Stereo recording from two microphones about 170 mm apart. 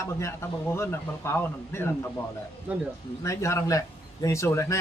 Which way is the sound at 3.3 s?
15° left (ahead or behind).